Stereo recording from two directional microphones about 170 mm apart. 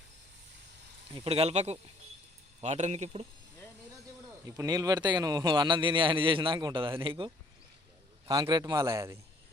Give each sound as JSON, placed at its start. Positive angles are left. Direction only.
{"t": 1.1, "sound": "speech", "side_deg": -35}
{"t": 4.4, "sound": "a man's voice", "side_deg": -20}
{"t": 8.3, "sound": "a man's voice", "side_deg": -25}